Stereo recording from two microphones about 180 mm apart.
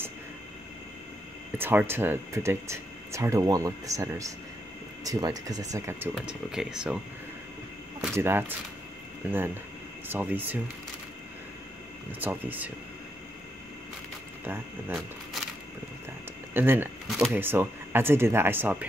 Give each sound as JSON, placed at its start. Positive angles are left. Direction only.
{"t": 1.6, "sound": "speech", "side_deg": -10}
{"t": 6.1, "sound": "speech", "side_deg": 0}
{"t": 8.0, "sound": "speech", "side_deg": -10}
{"t": 12.2, "sound": "speech", "side_deg": -10}
{"t": 14.4, "sound": "speech", "side_deg": -10}
{"t": 16.5, "sound": "speech", "side_deg": -10}
{"t": 17.4, "sound": "speech", "side_deg": -10}